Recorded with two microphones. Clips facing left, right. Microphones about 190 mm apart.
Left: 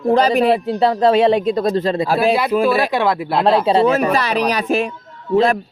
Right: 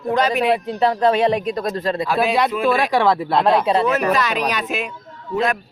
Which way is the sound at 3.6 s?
30° left (ahead or behind).